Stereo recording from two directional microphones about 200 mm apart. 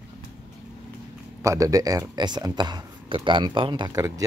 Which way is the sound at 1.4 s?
15° right (ahead or behind).